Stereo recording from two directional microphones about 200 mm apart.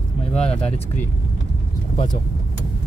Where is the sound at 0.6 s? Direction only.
30° left (ahead or behind).